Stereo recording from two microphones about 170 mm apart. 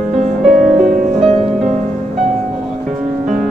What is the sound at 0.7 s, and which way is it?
Music, centre (ahead or behind).